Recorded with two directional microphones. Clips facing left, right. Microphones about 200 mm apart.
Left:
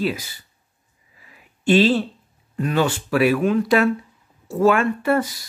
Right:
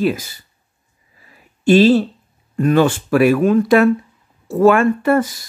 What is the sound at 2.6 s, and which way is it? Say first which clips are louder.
Speech: right 7 dB; 50° right (ahead or behind).